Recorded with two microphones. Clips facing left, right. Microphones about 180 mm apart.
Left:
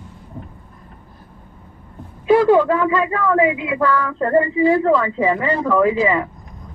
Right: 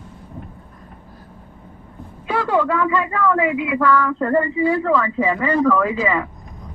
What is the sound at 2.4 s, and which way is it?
Speech, 20° left (ahead or behind).